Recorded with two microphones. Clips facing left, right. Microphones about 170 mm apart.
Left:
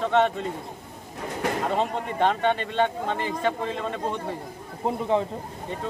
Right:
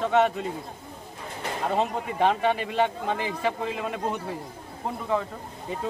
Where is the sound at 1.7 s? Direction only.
5° right (ahead or behind).